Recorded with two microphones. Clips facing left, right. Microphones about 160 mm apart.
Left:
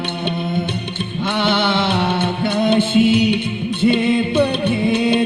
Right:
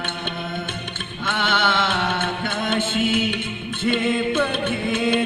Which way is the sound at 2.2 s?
50° right (ahead or behind).